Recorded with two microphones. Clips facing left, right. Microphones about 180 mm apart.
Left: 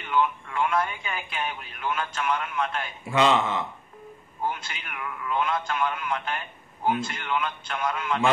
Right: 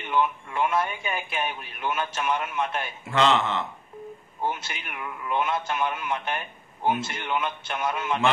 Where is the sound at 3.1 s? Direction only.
10° left (ahead or behind).